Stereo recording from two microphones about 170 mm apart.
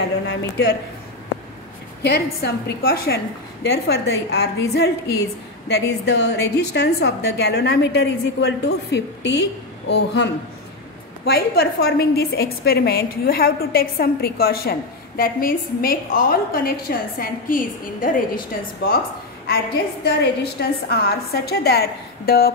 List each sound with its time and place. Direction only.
0.3 s a woman's voice: 80° left
2.0 s a woman's voice: 75° left (ahead or behind); by 10.3 s 90° left
11.2 s a woman's voice: 65° left (ahead or behind)